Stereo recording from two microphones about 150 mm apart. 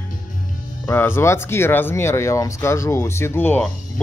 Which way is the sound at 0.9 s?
15° left (ahead or behind).